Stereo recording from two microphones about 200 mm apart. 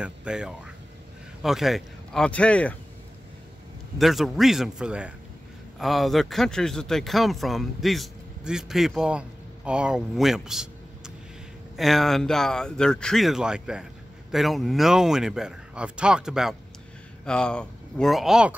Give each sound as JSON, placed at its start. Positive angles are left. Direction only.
{"t": 0.0, "sound": "speech", "side_deg": -5}
{"t": 4.0, "sound": "speech", "side_deg": 0}
{"t": 11.7, "sound": "speech", "side_deg": 0}